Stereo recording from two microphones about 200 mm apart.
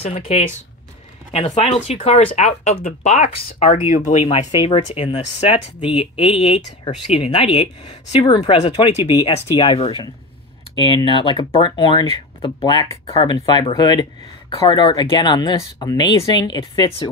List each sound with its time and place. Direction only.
0.0 s speech: 35° left (ahead or behind)